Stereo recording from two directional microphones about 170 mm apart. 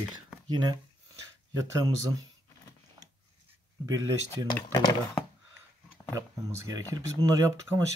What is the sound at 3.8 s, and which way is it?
Speech, 20° right (ahead or behind).